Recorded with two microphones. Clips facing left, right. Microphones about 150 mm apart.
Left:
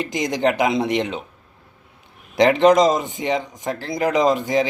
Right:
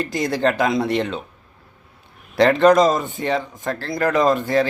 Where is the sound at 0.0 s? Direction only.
20° left (ahead or behind).